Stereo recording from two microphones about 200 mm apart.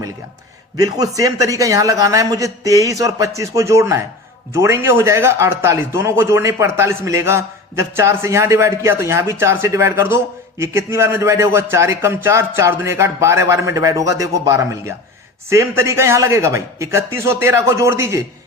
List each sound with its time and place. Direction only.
0.8 s speech: 20° right (ahead or behind)